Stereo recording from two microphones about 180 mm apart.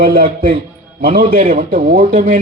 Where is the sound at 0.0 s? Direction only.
55° right (ahead or behind).